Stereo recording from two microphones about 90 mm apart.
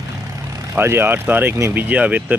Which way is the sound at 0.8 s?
25° right (ahead or behind).